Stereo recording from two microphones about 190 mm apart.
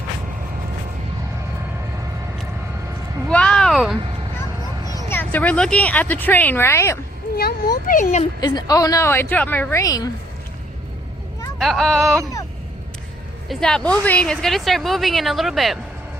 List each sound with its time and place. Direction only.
3.2 s a sound: 5° left (ahead or behind)
5.0 s speech: 10° left (ahead or behind)
7.3 s speech: 55° left (ahead or behind)
8.4 s speech: 20° left (ahead or behind)
11.6 s a woman's voice: centre (ahead or behind)
13.5 s a woman's voice: 5° left (ahead or behind)